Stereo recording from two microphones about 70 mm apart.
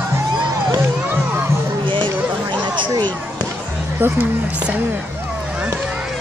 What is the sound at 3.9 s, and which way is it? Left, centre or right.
Speech, right.